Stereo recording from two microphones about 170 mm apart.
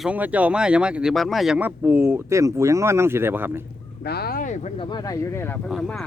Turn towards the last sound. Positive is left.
turn(degrees=5)  # may be behind; listen again after turning